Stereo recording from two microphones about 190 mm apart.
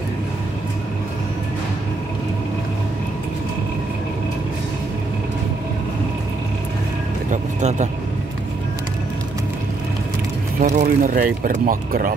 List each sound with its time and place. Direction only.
7.2 s music: 40° right (ahead or behind)
10.6 s speech: 40° right (ahead or behind)